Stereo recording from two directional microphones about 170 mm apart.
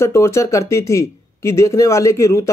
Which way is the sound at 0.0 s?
15° left (ahead or behind).